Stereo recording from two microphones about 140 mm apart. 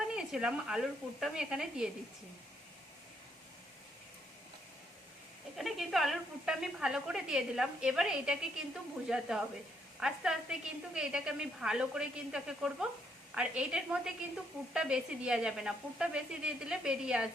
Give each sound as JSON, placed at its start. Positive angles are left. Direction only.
{"t": 0.1, "sound": "a woman's voice", "side_deg": -5}
{"t": 5.5, "sound": "a woman's voice", "side_deg": 0}